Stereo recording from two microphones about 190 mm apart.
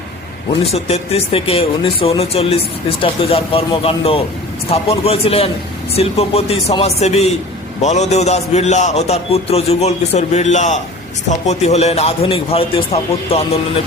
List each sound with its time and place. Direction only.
0.7 s speech: 30° left (ahead or behind)